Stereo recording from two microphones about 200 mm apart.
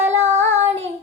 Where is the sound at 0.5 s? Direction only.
35° right (ahead or behind).